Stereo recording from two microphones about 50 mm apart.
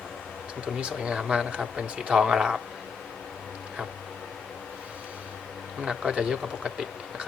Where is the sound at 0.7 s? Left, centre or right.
Centre.